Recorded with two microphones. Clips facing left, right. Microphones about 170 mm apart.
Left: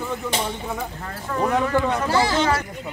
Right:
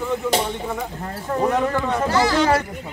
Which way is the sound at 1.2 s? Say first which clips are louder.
Right 2 dB; 35° right (ahead or behind).